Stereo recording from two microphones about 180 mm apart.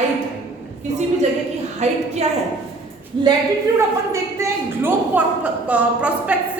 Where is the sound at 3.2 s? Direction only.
25° right (ahead or behind).